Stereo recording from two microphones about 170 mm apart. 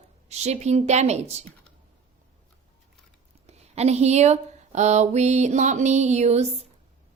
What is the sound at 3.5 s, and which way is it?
Mantra, 40° right (ahead or behind).